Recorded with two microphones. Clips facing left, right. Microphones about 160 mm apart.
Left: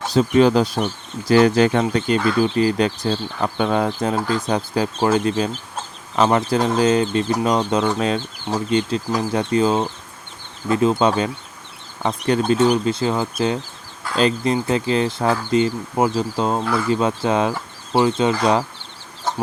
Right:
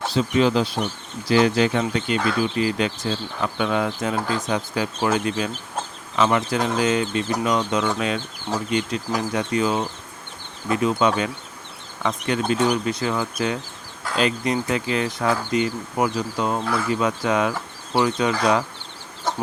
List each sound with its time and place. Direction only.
0.1 s speech: 45° left (ahead or behind); by 18.6 s 30° left (ahead or behind)